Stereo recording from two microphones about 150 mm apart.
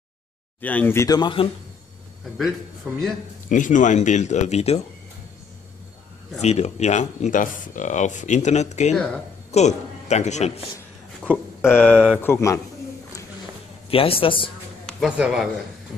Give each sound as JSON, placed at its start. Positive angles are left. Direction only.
{"t": 0.6, "sound": "speech", "side_deg": 10}
{"t": 2.9, "sound": "speech", "side_deg": -10}
{"t": 3.4, "sound": "speech", "side_deg": 60}
{"t": 6.4, "sound": "speech", "side_deg": 45}
{"t": 8.9, "sound": "a woman's voice", "side_deg": 5}
{"t": 9.5, "sound": "a man's voice", "side_deg": 50}
{"t": 11.7, "sound": "speech", "side_deg": 10}
{"t": 13.8, "sound": "a man's voice", "side_deg": 40}
{"t": 14.9, "sound": "speech", "side_deg": -5}